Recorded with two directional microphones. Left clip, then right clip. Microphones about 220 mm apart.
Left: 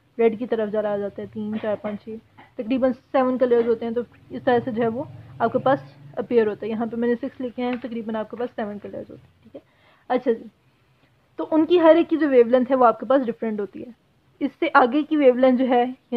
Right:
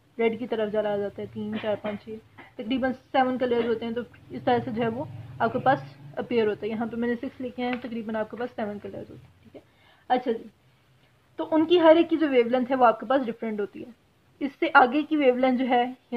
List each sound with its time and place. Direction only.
0.2 s a woman's voice: 35° left (ahead or behind)
10.0 s a woman's voice: 40° left (ahead or behind)
11.3 s a woman's voice: 40° left (ahead or behind)